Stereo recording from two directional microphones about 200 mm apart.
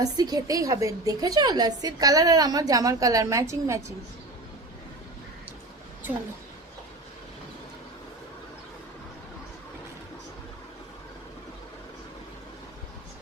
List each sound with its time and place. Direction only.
0.0 s a woman's voice: 20° right (ahead or behind)